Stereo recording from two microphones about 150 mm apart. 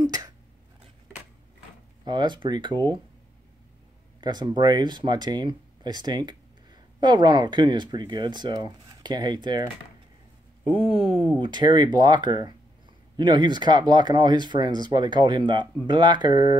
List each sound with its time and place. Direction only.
0.0 s a sound: 25° right (ahead or behind)
2.0 s speech: 30° right (ahead or behind)
4.2 s speech: 30° right (ahead or behind)
10.7 s speech: 40° right (ahead or behind)